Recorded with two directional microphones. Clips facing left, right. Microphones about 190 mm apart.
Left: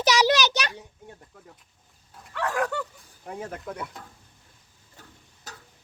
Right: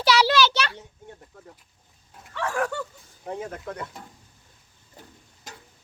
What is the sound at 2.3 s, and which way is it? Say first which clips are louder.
Dog: even; 15° left (ahead or behind).